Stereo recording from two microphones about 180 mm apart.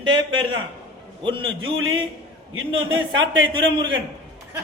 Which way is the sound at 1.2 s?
30° right (ahead or behind).